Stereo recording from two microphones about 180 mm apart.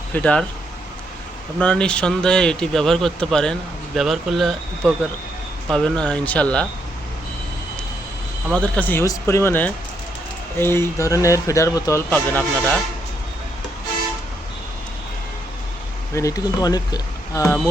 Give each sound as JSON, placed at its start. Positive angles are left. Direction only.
{"t": 0.1, "sound": "speech", "side_deg": 5}
{"t": 1.5, "sound": "speech", "side_deg": 5}
{"t": 8.5, "sound": "speech", "side_deg": 5}
{"t": 16.1, "sound": "speech", "side_deg": 20}